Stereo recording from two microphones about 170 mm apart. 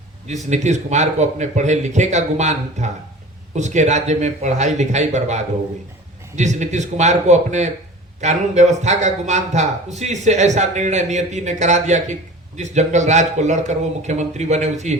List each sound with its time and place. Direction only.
0.5 s a man's voice: 45° right (ahead or behind)